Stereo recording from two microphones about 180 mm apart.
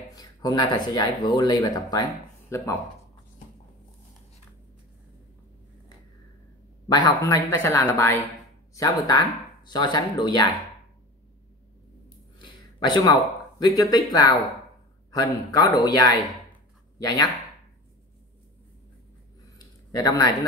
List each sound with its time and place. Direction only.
0.1 s speech: 20° left (ahead or behind)
6.9 s speech: 20° left (ahead or behind)
12.9 s speech: 20° left (ahead or behind)
19.9 s speech: 20° left (ahead or behind)